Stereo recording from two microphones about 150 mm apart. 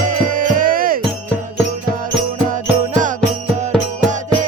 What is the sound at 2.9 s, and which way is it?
Music, 60° right (ahead or behind).